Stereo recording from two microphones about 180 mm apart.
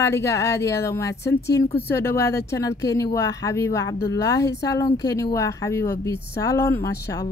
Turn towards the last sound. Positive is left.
turn(degrees=15)  # may be behind; listen again after turning